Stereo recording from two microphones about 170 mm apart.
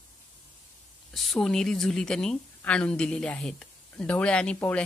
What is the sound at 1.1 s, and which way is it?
A woman's voice, centre (ahead or behind).